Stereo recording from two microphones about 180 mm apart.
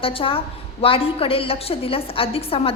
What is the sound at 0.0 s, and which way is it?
A woman's voice, 30° left (ahead or behind).